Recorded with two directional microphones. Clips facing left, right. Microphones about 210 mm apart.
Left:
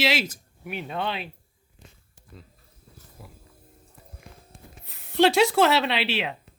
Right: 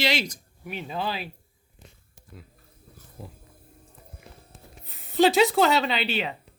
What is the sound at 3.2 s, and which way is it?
Speech, 25° right (ahead or behind).